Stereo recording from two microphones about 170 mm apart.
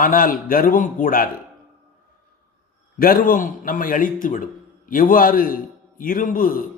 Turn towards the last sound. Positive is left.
turn(degrees=55)  # may be behind; listen again after turning